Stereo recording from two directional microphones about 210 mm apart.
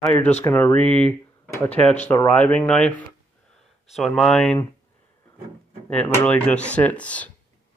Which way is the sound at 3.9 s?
Centre (ahead or behind).